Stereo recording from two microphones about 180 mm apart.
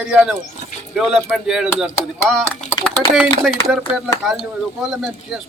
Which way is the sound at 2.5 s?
10° left (ahead or behind).